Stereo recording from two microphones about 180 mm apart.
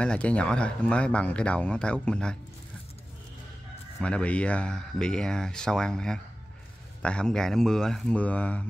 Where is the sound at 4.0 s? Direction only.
5° left (ahead or behind).